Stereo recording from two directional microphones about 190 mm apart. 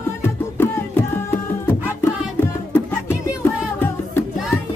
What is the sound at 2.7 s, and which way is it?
Music, 10° left (ahead or behind).